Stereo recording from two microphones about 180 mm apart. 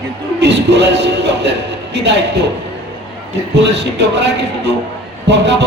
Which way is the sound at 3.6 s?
70° right (ahead or behind).